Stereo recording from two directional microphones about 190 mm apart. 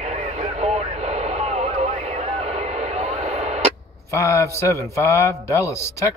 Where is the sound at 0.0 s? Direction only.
35° right (ahead or behind).